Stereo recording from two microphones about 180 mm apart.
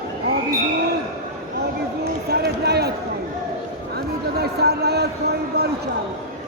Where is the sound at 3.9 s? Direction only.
65° right (ahead or behind).